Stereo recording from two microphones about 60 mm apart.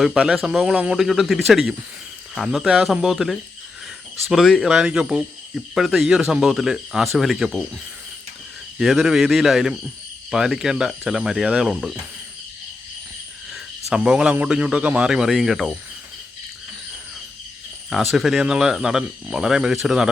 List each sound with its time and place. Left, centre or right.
0.4 s speech: centre
8.8 s speech: centre
13.5 s cricket: centre
14.4 s speech: centre
15.3 s speech: centre
17.9 s speech: centre